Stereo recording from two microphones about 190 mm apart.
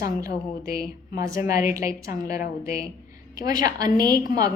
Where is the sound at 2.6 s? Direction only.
15° right (ahead or behind).